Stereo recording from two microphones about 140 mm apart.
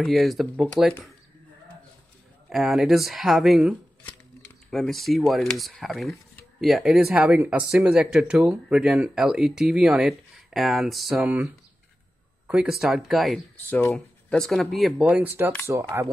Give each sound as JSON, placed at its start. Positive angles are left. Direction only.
{"t": 0.0, "sound": "speech", "side_deg": 0}
{"t": 2.5, "sound": "speech", "side_deg": -5}
{"t": 12.4, "sound": "speech", "side_deg": -5}
{"t": 13.7, "sound": "speech", "side_deg": 15}